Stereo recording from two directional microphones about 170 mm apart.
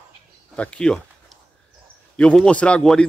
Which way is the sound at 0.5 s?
5° left (ahead or behind).